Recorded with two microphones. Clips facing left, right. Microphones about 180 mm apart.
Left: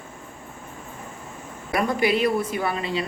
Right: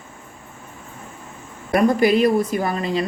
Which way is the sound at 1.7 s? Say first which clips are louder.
Right 6 dB; 45° right (ahead or behind).